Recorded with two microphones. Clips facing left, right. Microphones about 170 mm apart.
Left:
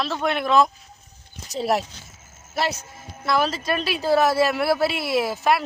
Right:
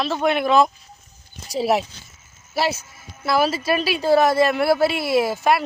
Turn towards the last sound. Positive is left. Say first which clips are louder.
# right 3 dB
turn(degrees=0)  # may be behind; listen again after turning